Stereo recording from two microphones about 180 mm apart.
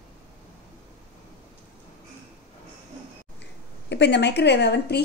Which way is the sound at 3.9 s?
75° left (ahead or behind).